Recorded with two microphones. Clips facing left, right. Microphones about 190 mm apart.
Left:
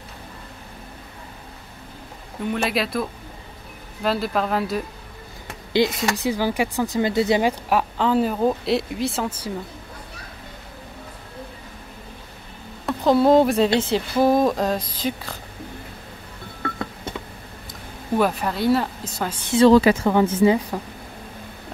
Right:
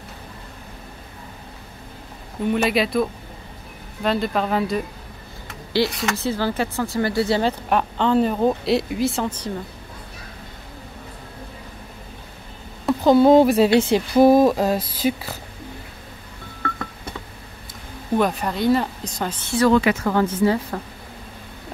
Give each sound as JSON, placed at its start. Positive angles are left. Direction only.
{"t": 2.5, "sound": "speech", "side_deg": 0}
{"t": 5.7, "sound": "speech", "side_deg": 20}
{"t": 7.7, "sound": "speech", "side_deg": 5}
{"t": 12.8, "sound": "speech", "side_deg": 0}
{"t": 16.6, "sound": "a sound", "side_deg": 20}
{"t": 18.1, "sound": "speech", "side_deg": 5}
{"t": 19.5, "sound": "a woman's voice", "side_deg": 30}
{"t": 20.4, "sound": "speech", "side_deg": 15}